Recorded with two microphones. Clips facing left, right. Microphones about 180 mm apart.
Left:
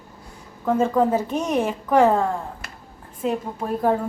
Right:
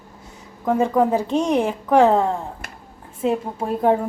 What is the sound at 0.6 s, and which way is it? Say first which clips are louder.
A woman's voice: right 1 dB; 15° right (ahead or behind).